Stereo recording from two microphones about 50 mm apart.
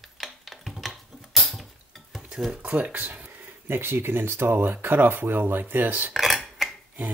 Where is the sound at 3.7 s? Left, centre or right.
Right.